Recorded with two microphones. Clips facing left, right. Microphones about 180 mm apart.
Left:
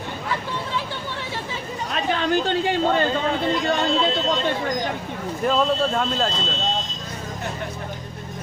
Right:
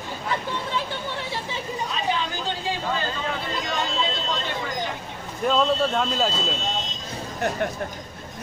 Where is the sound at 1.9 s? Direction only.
60° left (ahead or behind).